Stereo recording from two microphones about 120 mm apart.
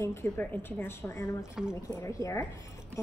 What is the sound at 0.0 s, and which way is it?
A woman's voice, 20° left (ahead or behind).